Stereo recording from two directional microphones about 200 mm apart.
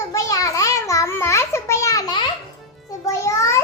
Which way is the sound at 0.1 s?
15° left (ahead or behind).